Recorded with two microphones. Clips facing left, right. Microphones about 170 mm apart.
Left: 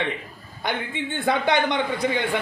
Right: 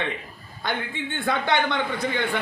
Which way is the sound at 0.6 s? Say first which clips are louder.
Left 1 dB; 20° left (ahead or behind).